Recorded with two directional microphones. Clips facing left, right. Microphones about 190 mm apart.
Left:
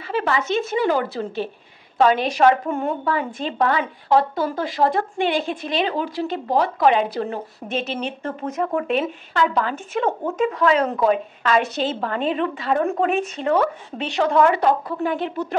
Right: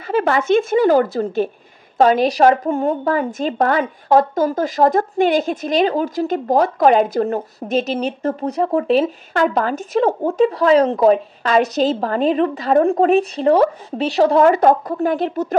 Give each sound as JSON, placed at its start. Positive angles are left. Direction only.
{"t": 0.0, "sound": "a woman's voice", "side_deg": -45}
{"t": 9.3, "sound": "speech", "side_deg": -45}